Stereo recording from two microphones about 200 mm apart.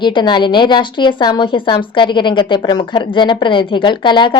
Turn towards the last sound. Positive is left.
turn(degrees=25)  # may be behind; listen again after turning